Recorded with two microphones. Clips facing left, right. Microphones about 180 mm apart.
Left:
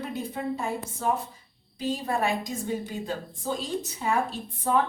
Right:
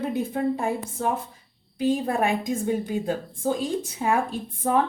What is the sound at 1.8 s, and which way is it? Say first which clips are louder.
A woman's voice: right 5 dB; 55° right (ahead or behind).